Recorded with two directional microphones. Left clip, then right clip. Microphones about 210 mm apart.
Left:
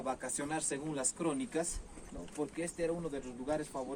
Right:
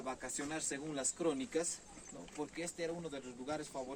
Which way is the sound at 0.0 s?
15° left (ahead or behind).